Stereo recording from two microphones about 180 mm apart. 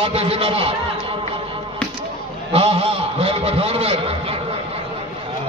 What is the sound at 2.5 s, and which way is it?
A man's voice, 35° right (ahead or behind).